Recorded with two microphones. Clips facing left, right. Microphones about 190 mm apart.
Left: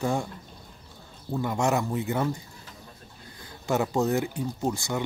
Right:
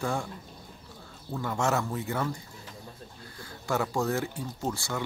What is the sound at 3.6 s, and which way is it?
Speech, 20° left (ahead or behind).